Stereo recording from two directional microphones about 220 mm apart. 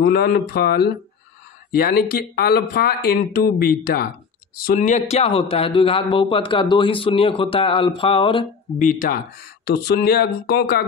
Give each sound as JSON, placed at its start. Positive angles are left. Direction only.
{"t": 0.0, "sound": "a man's voice", "side_deg": 50}
{"t": 8.8, "sound": "speech", "side_deg": 40}